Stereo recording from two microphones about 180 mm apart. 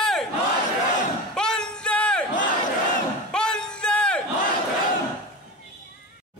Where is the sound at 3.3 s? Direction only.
5° left (ahead or behind).